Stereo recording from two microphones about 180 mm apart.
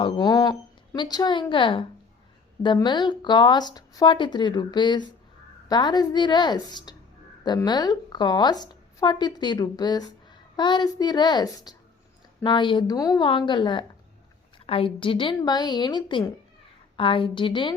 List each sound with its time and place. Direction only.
0.0 s a woman's voice: 25° left (ahead or behind)